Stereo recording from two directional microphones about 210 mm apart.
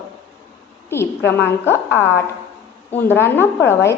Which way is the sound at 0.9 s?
10° left (ahead or behind).